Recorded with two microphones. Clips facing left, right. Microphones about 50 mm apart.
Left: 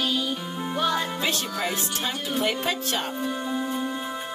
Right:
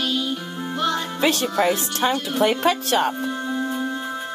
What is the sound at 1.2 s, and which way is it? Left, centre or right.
Music, right.